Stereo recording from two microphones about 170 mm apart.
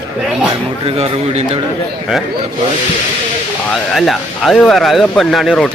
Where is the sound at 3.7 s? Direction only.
Centre (ahead or behind).